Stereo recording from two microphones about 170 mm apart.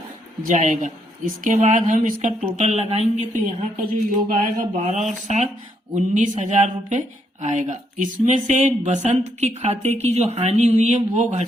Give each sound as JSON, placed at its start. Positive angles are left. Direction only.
{"t": 0.4, "sound": "speech", "side_deg": -45}